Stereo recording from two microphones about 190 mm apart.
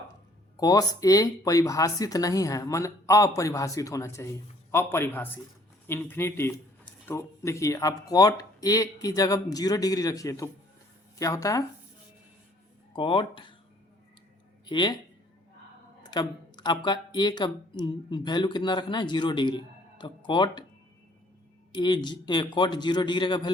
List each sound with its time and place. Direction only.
0.5 s speech: 20° left (ahead or behind)
12.9 s speech: 25° left (ahead or behind)
14.7 s speech: 25° left (ahead or behind)
16.0 s speech: 20° left (ahead or behind)
21.8 s speech: 25° left (ahead or behind)